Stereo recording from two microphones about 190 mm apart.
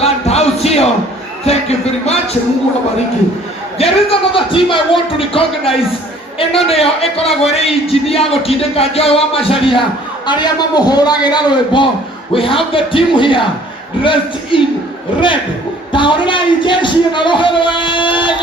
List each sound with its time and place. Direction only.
0.0 s music: 35° left (ahead or behind)
3.8 s a man's voice: 30° left (ahead or behind)
15.9 s a man's voice: 25° left (ahead or behind)